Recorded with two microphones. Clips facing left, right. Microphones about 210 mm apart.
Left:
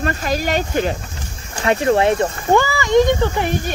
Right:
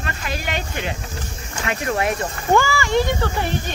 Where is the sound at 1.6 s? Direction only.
30° left (ahead or behind); by 3.7 s 15° left (ahead or behind).